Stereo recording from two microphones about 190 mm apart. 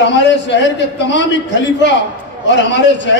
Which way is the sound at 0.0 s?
70° left (ahead or behind).